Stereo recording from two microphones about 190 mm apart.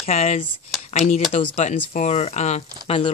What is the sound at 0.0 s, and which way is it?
Speech, 35° left (ahead or behind).